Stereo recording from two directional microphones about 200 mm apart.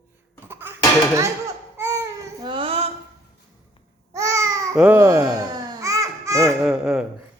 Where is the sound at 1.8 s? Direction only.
15° right (ahead or behind).